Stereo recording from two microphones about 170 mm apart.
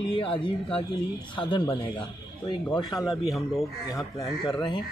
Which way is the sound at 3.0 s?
Centre (ahead or behind).